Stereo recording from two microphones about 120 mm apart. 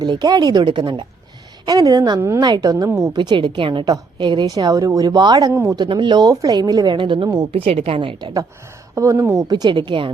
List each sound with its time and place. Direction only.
0.0 s speech: 35° right (ahead or behind)
1.6 s speech: 30° right (ahead or behind)
3.2 s a woman's voice: 40° right (ahead or behind)
7.5 s a woman's voice: 55° right (ahead or behind)
9.0 s speech: 25° right (ahead or behind)
9.5 s speech: 40° right (ahead or behind)